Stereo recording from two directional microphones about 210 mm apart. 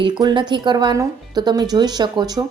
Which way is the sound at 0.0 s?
20° right (ahead or behind).